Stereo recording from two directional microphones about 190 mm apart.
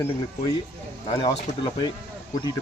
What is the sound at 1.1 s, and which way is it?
Speech, 25° left (ahead or behind).